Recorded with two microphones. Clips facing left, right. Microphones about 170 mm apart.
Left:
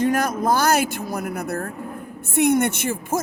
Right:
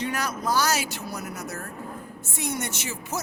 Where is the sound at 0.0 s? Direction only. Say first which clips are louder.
Left 8 dB; 50° left (ahead or behind).